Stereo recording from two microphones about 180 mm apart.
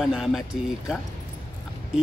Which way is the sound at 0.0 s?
Centre (ahead or behind).